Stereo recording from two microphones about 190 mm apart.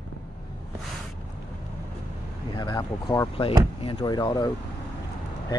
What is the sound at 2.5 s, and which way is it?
Speech, 25° left (ahead or behind).